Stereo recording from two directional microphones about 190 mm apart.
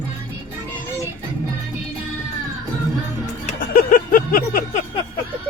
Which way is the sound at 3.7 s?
50° left (ahead or behind).